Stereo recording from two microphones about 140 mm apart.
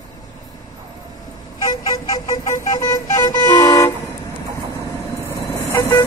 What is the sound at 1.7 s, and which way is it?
Vehicle, 25° left (ahead or behind).